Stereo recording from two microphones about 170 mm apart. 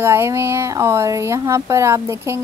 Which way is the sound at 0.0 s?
15° right (ahead or behind).